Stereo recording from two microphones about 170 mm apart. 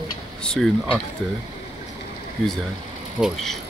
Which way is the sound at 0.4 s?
5° left (ahead or behind).